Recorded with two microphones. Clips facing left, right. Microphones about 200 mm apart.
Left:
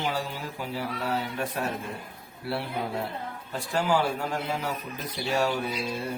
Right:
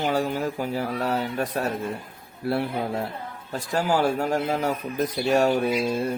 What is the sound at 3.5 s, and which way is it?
Speech, 45° right (ahead or behind).